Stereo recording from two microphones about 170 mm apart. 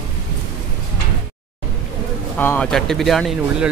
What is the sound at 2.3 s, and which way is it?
Speech, 10° left (ahead or behind).